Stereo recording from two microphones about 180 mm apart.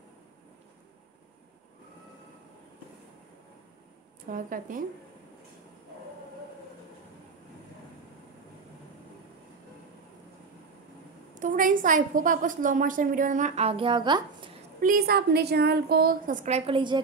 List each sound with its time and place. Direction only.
4.3 s a woman's voice: 50° right (ahead or behind)
11.3 s a woman's voice: 50° right (ahead or behind); by 14.5 s 25° right (ahead or behind)
14.8 s a woman's voice: 55° right (ahead or behind)
16.4 s a woman's voice: 35° right (ahead or behind)